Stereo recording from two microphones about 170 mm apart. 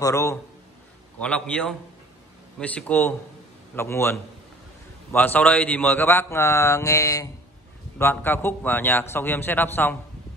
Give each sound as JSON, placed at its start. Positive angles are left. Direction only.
{"t": 0.0, "sound": "a man's voice", "side_deg": 20}
{"t": 1.2, "sound": "a man's voice", "side_deg": 5}